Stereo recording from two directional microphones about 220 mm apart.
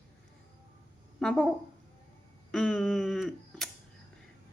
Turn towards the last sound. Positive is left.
turn(degrees=0)  # may be behind; listen again after turning